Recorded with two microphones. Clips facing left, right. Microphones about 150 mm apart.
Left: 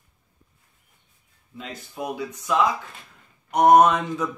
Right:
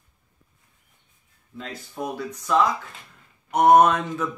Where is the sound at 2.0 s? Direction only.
5° left (ahead or behind).